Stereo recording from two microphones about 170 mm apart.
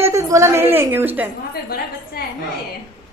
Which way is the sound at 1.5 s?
65° left (ahead or behind).